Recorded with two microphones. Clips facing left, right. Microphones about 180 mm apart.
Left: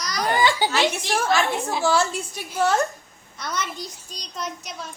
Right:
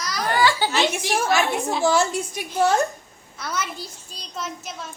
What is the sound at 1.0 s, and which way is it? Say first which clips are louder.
A woman's voice: right 1 dB; 15° right (ahead or behind).